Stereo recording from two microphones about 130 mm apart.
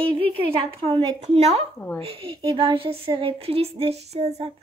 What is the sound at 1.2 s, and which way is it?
Speech, 55° right (ahead or behind).